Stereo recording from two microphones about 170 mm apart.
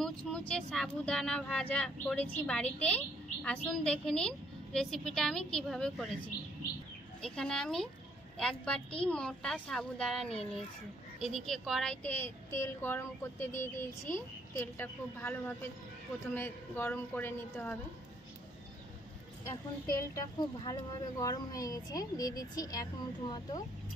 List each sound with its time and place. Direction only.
0.0 s speech: 5° left (ahead or behind)
7.2 s a woman's voice: 5° left (ahead or behind)
20.0 s speech: 20° left (ahead or behind)